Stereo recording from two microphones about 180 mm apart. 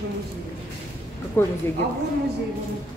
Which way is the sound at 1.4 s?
10° left (ahead or behind).